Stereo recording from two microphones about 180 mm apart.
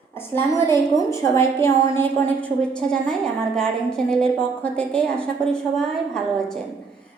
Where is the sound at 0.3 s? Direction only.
15° left (ahead or behind).